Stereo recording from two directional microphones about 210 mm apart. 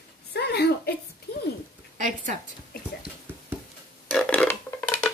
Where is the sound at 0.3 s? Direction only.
50° left (ahead or behind).